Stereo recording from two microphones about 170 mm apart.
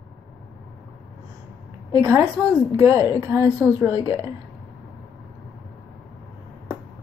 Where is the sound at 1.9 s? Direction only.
20° right (ahead or behind).